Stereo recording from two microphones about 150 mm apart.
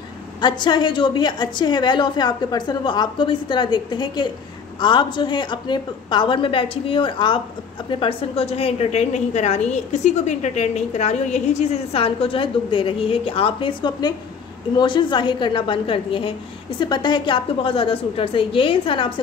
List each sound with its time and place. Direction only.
0.4 s a woman's voice: 30° left (ahead or behind)